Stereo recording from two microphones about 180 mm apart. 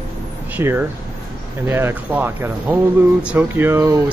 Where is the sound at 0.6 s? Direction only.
10° right (ahead or behind).